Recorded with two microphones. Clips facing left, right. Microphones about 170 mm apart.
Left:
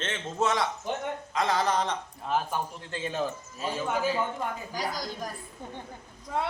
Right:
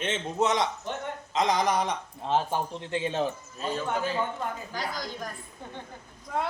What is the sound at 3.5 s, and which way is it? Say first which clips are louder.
A woman's voice: left 1 dB; 5° left (ahead or behind).